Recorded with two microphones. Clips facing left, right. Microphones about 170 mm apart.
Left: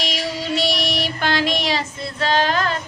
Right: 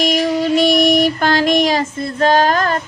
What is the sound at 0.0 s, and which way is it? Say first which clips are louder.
Child singing: right 10 dB; 50° right (ahead or behind).